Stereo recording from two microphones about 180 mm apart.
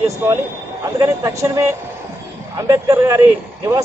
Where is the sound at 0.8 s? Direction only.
15° right (ahead or behind).